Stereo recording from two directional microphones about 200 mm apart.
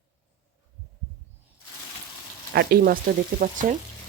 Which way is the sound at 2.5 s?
45° right (ahead or behind).